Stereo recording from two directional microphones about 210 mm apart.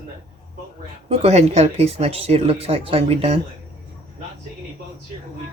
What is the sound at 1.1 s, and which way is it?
Speech, 30° right (ahead or behind).